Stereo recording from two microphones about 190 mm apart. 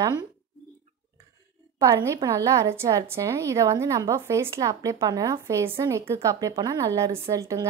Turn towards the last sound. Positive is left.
turn(degrees=-15)  # may be behind; listen again after turning